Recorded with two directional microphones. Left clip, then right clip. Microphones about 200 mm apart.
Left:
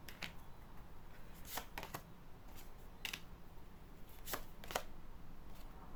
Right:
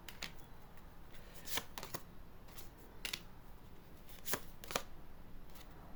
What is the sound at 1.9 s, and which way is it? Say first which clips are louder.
Typing: right 1 dB; 15° right (ahead or behind).